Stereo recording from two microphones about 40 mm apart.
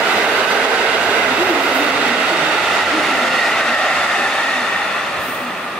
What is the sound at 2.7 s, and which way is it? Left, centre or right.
Train, centre.